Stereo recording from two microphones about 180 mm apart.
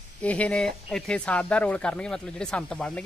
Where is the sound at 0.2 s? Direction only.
5° left (ahead or behind).